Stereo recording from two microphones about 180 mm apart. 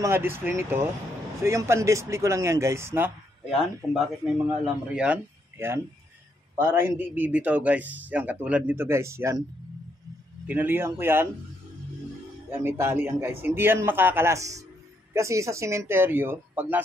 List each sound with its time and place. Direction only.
0.0 s speech: 15° right (ahead or behind)
3.4 s speech: 5° right (ahead or behind)
10.4 s speech: 10° right (ahead or behind)
12.4 s speech: 15° right (ahead or behind)